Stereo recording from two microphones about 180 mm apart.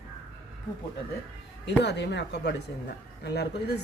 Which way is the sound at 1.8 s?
70° left (ahead or behind).